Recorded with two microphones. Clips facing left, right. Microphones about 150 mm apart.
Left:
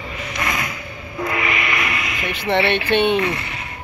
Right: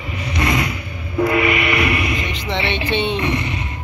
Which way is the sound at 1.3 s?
20° right (ahead or behind).